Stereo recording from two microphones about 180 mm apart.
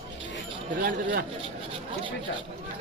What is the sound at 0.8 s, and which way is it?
Speech, 50° right (ahead or behind).